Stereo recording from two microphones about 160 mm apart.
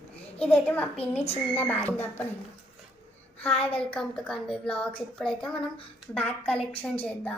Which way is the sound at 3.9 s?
5° left (ahead or behind).